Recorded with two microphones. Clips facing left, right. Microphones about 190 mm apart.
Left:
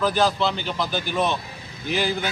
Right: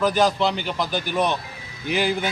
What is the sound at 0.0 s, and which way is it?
Speech, 15° right (ahead or behind).